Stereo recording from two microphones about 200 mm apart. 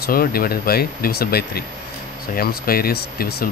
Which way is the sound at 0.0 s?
50° left (ahead or behind).